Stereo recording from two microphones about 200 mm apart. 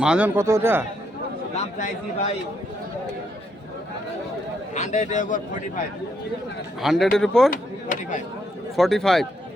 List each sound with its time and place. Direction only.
0.0 s speech: 5° right (ahead or behind)
1.5 s a man's voice: 35° left (ahead or behind)
4.7 s a man's voice: 35° left (ahead or behind)
6.8 s speech: centre (ahead or behind)
7.5 s speech: 45° left (ahead or behind)
8.7 s speech: centre (ahead or behind)